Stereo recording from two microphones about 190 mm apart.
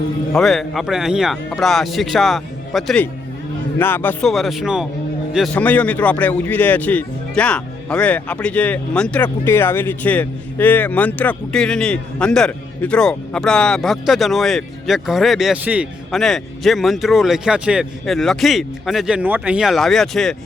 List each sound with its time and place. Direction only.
0.3 s speech: centre (ahead or behind)